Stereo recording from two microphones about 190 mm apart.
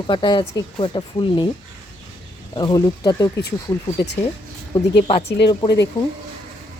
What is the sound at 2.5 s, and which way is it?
Speech, 20° left (ahead or behind).